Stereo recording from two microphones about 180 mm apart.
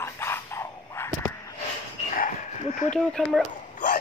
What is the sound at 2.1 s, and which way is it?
Dog, 45° left (ahead or behind).